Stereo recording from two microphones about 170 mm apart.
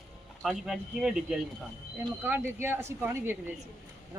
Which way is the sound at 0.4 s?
5° right (ahead or behind).